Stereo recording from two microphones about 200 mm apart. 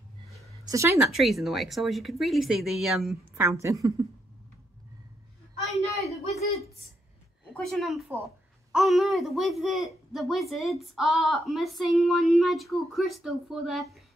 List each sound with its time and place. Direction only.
0.7 s speech: 15° right (ahead or behind)
1.0 s speech: centre (ahead or behind)
3.3 s a woman's voice: 15° right (ahead or behind)
5.9 s speech: centre (ahead or behind)
7.5 s speech: centre (ahead or behind)